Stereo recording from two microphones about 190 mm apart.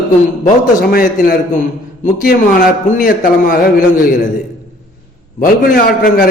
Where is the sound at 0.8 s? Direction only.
50° left (ahead or behind).